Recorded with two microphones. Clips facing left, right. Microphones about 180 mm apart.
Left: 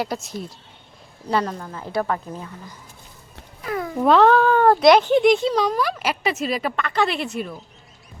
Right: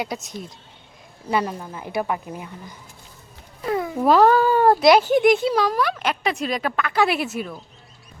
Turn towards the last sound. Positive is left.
turn(degrees=0)  # may be behind; listen again after turning